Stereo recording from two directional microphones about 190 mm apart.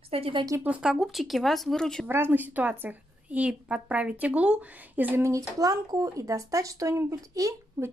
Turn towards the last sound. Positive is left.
turn(degrees=-15)  # may be behind; listen again after turning